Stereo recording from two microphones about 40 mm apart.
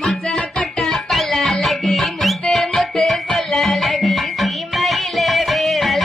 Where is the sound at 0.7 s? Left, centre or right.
Centre.